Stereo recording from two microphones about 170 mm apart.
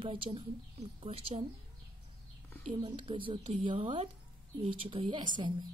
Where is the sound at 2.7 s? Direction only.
30° right (ahead or behind).